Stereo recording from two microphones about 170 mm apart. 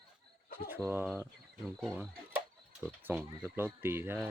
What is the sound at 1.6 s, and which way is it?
Speech, centre (ahead or behind).